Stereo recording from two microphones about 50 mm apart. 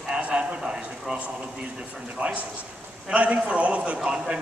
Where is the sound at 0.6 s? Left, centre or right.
Centre.